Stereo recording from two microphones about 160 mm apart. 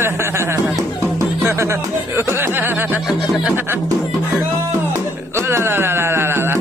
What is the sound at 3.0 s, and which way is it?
Music, centre (ahead or behind).